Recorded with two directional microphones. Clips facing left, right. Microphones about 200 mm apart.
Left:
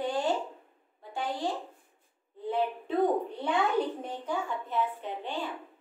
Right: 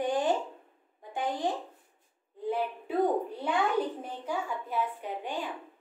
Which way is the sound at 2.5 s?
10° right (ahead or behind).